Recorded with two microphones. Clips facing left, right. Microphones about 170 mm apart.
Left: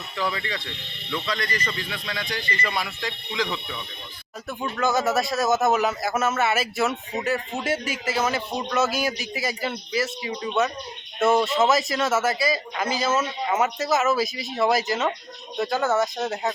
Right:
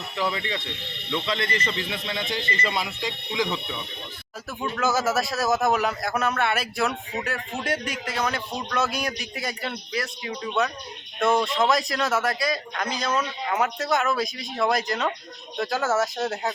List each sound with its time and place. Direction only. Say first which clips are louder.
0.2 s speech: right 1 dB; 20° right (ahead or behind)
4.4 s speech: left 1 dB; centre (ahead or behind)